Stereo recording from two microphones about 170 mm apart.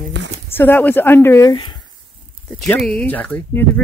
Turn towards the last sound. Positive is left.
turn(degrees=10)  # may be behind; listen again after turning